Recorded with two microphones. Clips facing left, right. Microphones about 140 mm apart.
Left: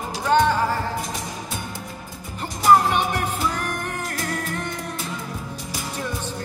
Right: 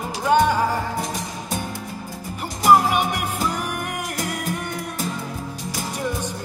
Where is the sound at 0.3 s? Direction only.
10° right (ahead or behind).